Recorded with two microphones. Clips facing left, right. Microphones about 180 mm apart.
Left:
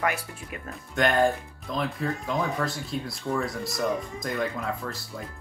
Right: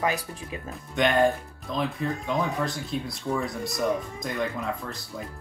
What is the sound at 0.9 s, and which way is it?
Speech, centre (ahead or behind).